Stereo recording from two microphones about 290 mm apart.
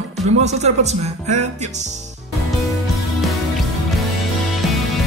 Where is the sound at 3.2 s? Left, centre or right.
Centre.